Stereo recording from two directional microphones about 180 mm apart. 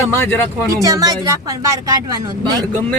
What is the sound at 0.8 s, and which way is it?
Speech, 20° right (ahead or behind).